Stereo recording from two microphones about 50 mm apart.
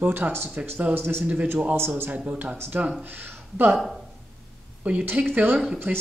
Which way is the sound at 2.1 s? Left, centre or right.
Right.